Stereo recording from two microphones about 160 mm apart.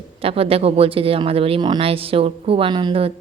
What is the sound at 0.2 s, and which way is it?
Speech, 35° right (ahead or behind).